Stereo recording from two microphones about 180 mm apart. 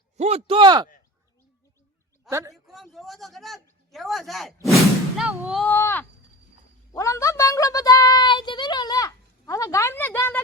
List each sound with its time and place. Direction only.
0.2 s speech: 35° right (ahead or behind)
2.3 s a man's voice: 15° right (ahead or behind)
2.9 s a sound: centre (ahead or behind)
4.6 s speech: centre (ahead or behind)
5.6 s speech: 15° left (ahead or behind)
6.9 s a sound: 15° left (ahead or behind)